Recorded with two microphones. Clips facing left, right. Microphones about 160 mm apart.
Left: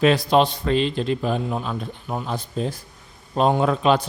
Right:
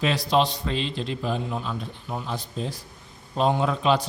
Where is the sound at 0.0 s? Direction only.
55° left (ahead or behind).